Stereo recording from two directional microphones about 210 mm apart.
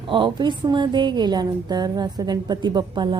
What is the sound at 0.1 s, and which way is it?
A woman's voice, 20° right (ahead or behind).